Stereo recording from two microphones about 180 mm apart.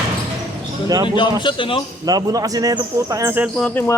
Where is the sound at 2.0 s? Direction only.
20° right (ahead or behind).